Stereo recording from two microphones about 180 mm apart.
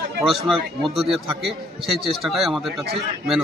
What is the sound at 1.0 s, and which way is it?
Speech, 35° right (ahead or behind).